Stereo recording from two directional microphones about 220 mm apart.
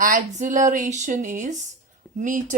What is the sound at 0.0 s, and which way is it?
Speech, 35° right (ahead or behind).